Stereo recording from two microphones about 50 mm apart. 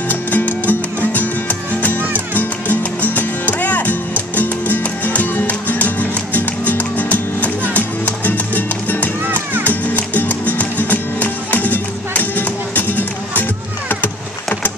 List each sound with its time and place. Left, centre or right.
0.1 s music: left
9.3 s music: right
9.7 s music: left